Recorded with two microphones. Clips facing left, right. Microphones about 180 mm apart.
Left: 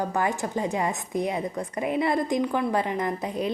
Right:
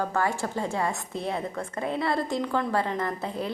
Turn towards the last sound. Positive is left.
turn(degrees=15)  # may be behind; listen again after turning